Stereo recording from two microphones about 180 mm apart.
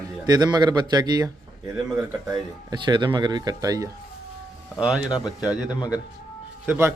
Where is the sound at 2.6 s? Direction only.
25° right (ahead or behind).